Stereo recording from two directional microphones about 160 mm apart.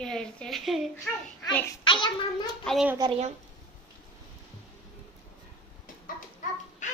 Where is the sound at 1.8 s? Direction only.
30° left (ahead or behind).